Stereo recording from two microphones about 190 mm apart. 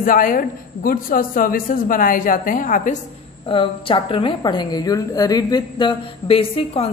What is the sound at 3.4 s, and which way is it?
A woman's voice, 25° left (ahead or behind).